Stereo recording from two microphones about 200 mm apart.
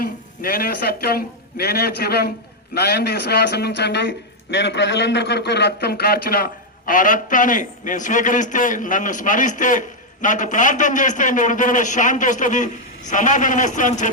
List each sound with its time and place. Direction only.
0.0 s a man's voice: 45° left (ahead or behind)